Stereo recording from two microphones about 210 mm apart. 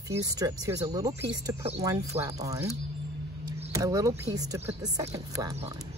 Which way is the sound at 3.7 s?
15° right (ahead or behind).